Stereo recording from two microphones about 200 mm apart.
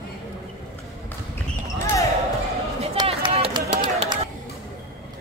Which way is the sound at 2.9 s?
25° right (ahead or behind).